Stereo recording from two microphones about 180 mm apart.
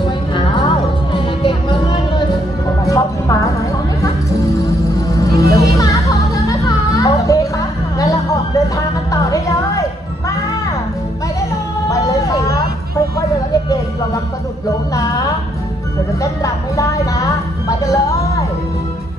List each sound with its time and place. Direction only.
0.0 s music: 25° left (ahead or behind)
11.9 s music: 20° left (ahead or behind)
16.4 s music: 20° left (ahead or behind)